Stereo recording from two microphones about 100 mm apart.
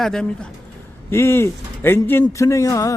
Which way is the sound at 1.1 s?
25° left (ahead or behind).